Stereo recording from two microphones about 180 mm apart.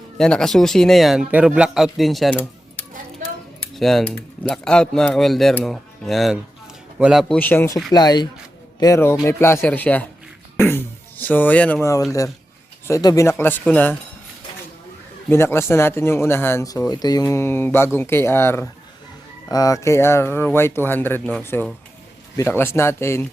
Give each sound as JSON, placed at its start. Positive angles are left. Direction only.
{"t": 0.2, "sound": "speech", "side_deg": 5}
{"t": 7.3, "sound": "speech", "side_deg": 10}
{"t": 10.6, "sound": "a sound", "side_deg": 10}
{"t": 12.9, "sound": "speech", "side_deg": 20}
{"t": 15.3, "sound": "speech", "side_deg": 15}